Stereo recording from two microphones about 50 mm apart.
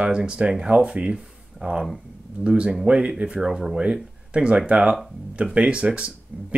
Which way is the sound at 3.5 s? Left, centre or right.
Centre.